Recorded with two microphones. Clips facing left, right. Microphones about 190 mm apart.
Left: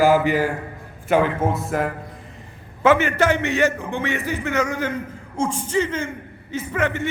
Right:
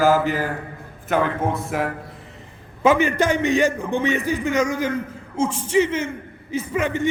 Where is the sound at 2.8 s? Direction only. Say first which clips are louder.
Even; 15° right (ahead or behind).